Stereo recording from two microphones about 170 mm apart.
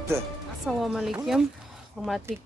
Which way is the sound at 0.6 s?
Centre (ahead or behind).